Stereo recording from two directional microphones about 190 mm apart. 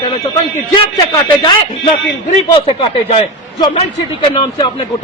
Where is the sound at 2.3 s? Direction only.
25° left (ahead or behind).